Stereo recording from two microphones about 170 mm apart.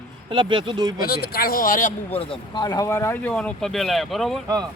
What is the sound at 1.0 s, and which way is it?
Speech, 65° left (ahead or behind).